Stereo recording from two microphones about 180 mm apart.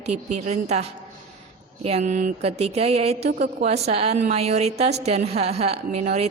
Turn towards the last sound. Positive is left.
turn(degrees=-35)  # may be behind; listen again after turning